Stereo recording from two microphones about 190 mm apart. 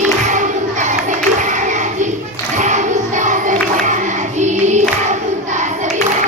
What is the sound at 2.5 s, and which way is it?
Music, 40° right (ahead or behind).